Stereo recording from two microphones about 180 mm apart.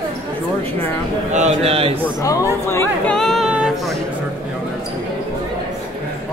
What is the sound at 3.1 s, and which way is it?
Female singing, centre (ahead or behind).